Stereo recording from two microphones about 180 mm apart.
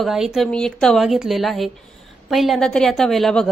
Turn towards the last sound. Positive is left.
turn(degrees=0)  # may be behind; listen again after turning